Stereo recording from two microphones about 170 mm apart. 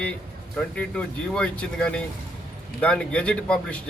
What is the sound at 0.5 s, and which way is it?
Speech, 5° left (ahead or behind).